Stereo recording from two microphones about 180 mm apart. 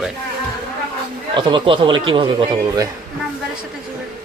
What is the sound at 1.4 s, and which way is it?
A man's voice, 25° right (ahead or behind).